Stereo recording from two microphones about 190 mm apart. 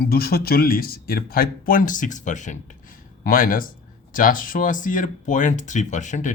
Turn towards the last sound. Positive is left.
turn(degrees=40)  # may be behind; listen again after turning